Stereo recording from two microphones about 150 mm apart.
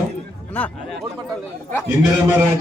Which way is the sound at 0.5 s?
10° left (ahead or behind).